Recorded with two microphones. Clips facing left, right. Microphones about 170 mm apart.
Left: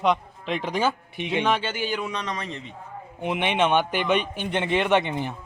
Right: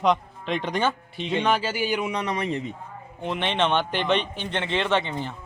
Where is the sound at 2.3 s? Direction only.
25° right (ahead or behind).